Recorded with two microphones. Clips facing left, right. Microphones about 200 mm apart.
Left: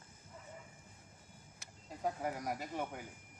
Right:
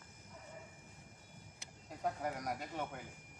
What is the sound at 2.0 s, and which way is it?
Speech, 5° left (ahead or behind).